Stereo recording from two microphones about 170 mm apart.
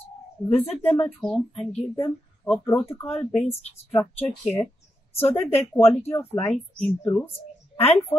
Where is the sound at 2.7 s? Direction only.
15° left (ahead or behind).